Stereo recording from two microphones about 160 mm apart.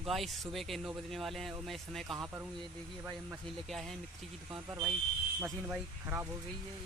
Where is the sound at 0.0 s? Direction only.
Centre (ahead or behind).